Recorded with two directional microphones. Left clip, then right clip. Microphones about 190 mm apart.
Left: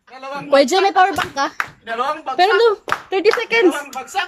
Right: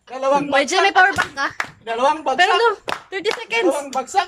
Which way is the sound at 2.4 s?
20° left (ahead or behind).